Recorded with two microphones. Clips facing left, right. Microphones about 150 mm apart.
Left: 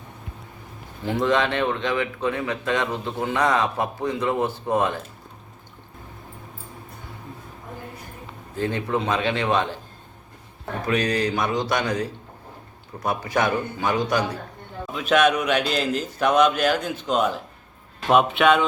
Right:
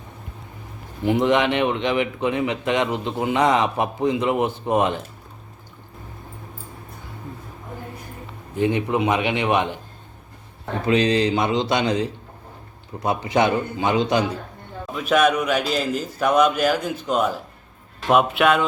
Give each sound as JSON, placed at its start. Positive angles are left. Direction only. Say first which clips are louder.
{"t": 1.0, "sound": "a man's voice", "louder": "right 3 dB", "side_deg": -20}
{"t": 8.5, "sound": "a man's voice", "louder": "right 4 dB", "side_deg": -15}
{"t": 10.8, "sound": "a man's voice", "louder": "right 4 dB", "side_deg": -25}
{"t": 14.9, "sound": "a man's voice", "louder": "right 1 dB", "side_deg": -5}